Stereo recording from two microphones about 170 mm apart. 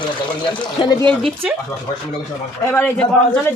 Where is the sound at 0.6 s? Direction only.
25° left (ahead or behind).